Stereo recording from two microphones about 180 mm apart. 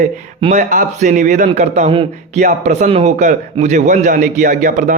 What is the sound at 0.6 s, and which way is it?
A man's voice, 45° right (ahead or behind).